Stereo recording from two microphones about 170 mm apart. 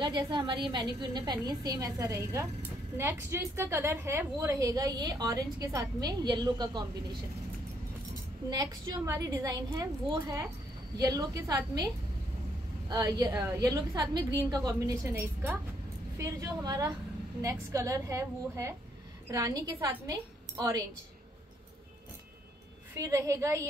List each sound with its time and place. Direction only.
0.0 s a woman's voice: 25° right (ahead or behind)
8.5 s a woman's voice: 20° right (ahead or behind)
12.8 s a woman's voice: 20° right (ahead or behind)
22.9 s a woman's voice: 20° right (ahead or behind)